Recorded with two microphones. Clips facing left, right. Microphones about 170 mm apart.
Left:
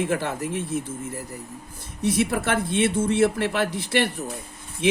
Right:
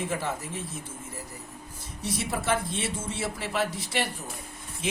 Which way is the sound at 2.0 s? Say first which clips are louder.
Left 9 dB; 60° left (ahead or behind).